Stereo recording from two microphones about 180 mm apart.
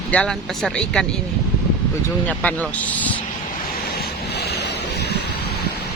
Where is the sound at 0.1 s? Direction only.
5° left (ahead or behind).